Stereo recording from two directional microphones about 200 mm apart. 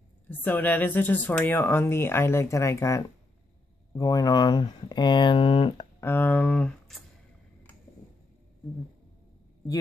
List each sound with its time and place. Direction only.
0.3 s speech: 10° left (ahead or behind); by 5.9 s 25° left (ahead or behind)
5.9 s speech: 10° left (ahead or behind)